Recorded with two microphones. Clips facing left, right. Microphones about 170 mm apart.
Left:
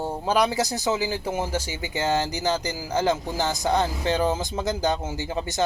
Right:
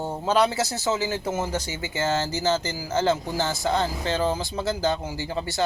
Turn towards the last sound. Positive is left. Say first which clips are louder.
# left 1 dB
turn(degrees=20)  # may be behind; listen again after turning